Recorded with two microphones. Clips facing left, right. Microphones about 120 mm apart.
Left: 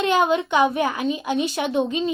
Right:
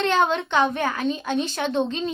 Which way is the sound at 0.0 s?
10° left (ahead or behind).